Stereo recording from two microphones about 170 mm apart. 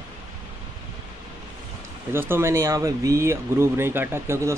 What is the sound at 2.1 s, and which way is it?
Speech, 15° right (ahead or behind).